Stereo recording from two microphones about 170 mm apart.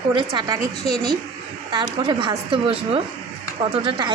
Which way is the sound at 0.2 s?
25° right (ahead or behind).